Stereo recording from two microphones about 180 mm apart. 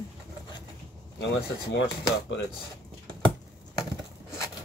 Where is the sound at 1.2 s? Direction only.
75° left (ahead or behind).